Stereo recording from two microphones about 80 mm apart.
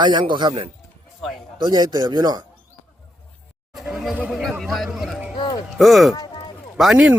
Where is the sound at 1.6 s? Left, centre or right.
Right.